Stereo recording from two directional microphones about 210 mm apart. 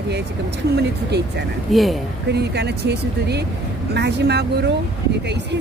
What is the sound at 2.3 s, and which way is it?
Speech, 50° right (ahead or behind).